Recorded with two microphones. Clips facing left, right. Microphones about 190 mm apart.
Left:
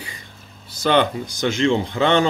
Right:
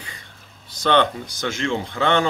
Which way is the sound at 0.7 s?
10° left (ahead or behind).